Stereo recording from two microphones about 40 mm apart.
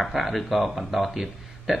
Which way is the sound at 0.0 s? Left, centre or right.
Centre.